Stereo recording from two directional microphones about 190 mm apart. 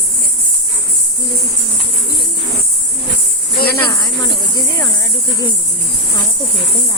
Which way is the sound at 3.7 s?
15° left (ahead or behind).